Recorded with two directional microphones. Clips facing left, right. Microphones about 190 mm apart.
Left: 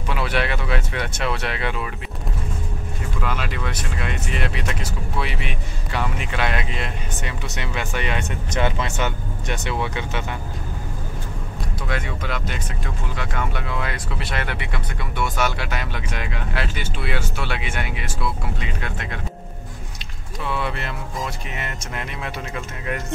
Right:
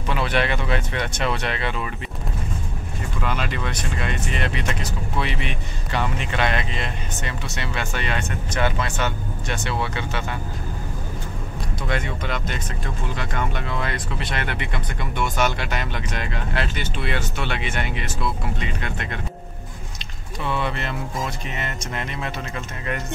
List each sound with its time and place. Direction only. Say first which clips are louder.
0.1 s speech: right 1 dB; 5° left (ahead or behind)
3.2 s speech: right 1 dB; centre (ahead or behind)
11.9 s speech: right 1 dB; 5° left (ahead or behind)
20.4 s speech: right 1 dB; 5° left (ahead or behind)